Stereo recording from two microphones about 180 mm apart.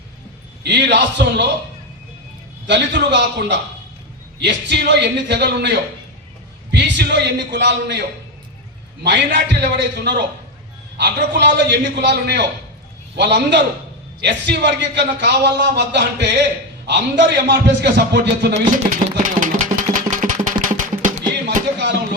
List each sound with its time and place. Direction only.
0.6 s a man's voice: 70° right (ahead or behind)
2.6 s a man's voice: 75° right (ahead or behind)
9.0 s a man's voice: 70° right (ahead or behind)
18.8 s a sound: 45° right (ahead or behind)